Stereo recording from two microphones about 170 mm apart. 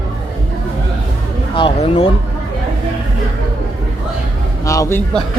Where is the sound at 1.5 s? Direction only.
30° left (ahead or behind).